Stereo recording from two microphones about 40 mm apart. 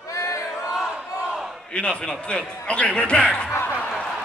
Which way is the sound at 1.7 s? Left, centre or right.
Left.